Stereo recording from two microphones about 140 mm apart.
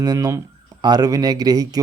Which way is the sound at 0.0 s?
25° right (ahead or behind).